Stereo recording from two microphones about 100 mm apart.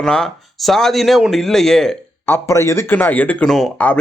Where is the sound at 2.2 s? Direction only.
25° left (ahead or behind).